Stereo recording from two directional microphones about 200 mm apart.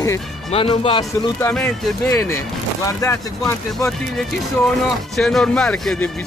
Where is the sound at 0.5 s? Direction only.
30° left (ahead or behind).